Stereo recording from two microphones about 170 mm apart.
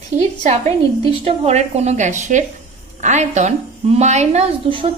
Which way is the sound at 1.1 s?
35° right (ahead or behind).